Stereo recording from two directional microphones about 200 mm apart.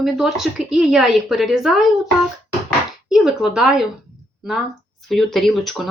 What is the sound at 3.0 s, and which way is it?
Speech, 5° right (ahead or behind).